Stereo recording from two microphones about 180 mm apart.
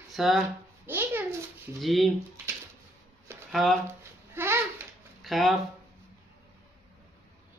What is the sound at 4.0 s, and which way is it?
Babbling, 15° right (ahead or behind).